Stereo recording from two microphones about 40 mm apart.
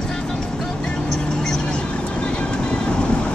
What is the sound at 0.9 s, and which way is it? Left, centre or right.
Vehicle, centre.